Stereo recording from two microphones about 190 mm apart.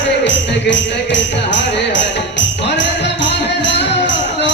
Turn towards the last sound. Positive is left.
turn(degrees=70)  # may be behind; listen again after turning